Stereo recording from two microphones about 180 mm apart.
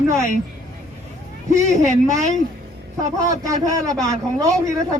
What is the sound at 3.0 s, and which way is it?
A man's voice, 20° right (ahead or behind).